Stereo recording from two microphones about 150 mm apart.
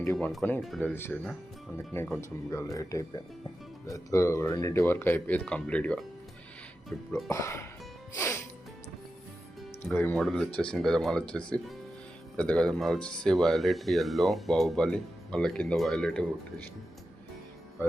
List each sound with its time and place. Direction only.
0.0 s speech: 15° left (ahead or behind)
7.3 s speech: 20° left (ahead or behind)
8.1 s music: 20° left (ahead or behind)
9.8 s speech: 15° left (ahead or behind)